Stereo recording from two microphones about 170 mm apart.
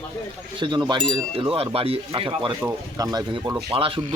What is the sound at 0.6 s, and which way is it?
Speech, 25° right (ahead or behind).